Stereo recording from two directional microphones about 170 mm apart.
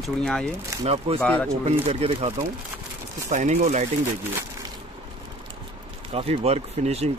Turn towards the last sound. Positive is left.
turn(degrees=-40)  # may be behind; listen again after turning